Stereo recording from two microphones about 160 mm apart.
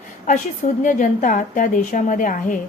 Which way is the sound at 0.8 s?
55° left (ahead or behind).